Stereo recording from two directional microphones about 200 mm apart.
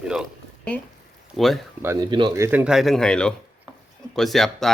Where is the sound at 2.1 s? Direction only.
25° right (ahead or behind).